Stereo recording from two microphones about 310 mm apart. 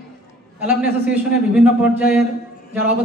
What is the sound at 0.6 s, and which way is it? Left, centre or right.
A man's voice, centre.